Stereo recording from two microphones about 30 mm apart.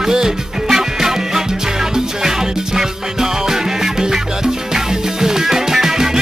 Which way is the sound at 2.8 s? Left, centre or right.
Centre.